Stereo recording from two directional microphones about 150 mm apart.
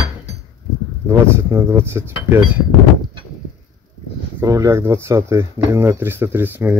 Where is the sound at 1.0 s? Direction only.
15° right (ahead or behind).